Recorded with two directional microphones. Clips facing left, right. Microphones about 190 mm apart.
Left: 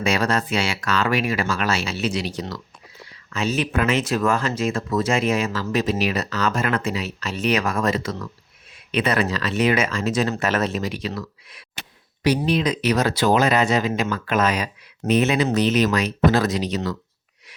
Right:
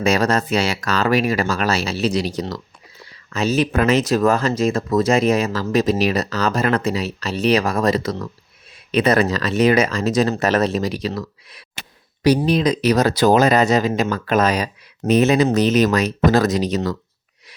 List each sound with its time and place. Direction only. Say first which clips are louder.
0.0 s speech: right 4 dB; 40° right (ahead or behind)